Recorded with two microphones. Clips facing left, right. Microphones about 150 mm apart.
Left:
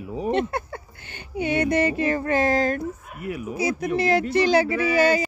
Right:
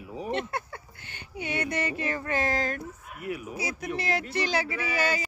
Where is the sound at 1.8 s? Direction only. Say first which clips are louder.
Left 8 dB; 40° left (ahead or behind).